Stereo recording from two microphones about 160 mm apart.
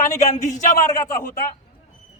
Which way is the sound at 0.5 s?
20° left (ahead or behind).